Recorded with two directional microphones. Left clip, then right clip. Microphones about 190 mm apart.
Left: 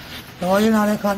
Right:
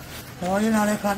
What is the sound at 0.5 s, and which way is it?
Speech, 15° left (ahead or behind).